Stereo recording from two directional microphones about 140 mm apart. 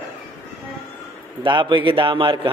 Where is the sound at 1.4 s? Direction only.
35° right (ahead or behind).